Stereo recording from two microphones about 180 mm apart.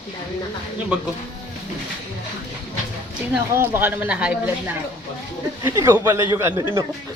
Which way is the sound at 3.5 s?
10° right (ahead or behind).